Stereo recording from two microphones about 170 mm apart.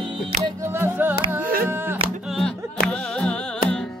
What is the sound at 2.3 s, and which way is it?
Music, 5° left (ahead or behind).